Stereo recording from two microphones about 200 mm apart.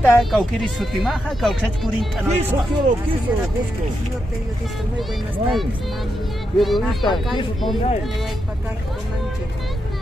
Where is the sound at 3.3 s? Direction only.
10° right (ahead or behind).